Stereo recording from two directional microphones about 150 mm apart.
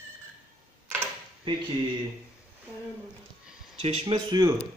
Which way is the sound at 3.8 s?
40° right (ahead or behind).